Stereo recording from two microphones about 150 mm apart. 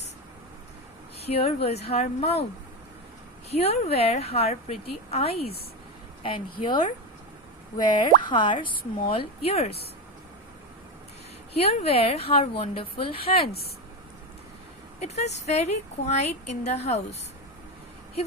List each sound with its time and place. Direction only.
1.2 s speech: 45° left (ahead or behind)
3.5 s speech: 45° left (ahead or behind)
11.5 s speech: 40° left (ahead or behind)
15.0 s speech: 45° left (ahead or behind)